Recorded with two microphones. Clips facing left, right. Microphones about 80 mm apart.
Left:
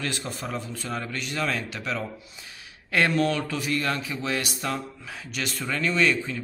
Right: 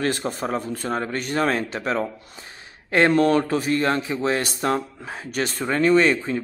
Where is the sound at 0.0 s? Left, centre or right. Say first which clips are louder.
Right 8 dB; right.